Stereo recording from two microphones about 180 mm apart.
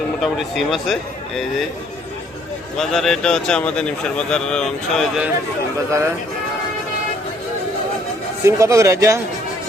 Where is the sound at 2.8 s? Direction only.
Centre (ahead or behind).